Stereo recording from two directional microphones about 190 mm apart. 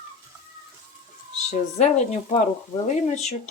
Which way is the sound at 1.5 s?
35° left (ahead or behind).